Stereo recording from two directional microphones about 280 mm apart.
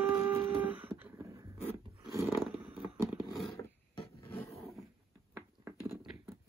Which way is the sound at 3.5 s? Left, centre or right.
Centre.